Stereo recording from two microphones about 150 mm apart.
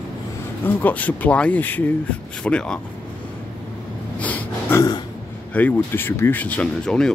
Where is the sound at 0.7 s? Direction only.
10° left (ahead or behind).